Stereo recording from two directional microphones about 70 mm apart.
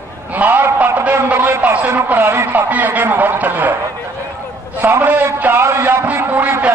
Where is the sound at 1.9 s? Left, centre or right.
Right.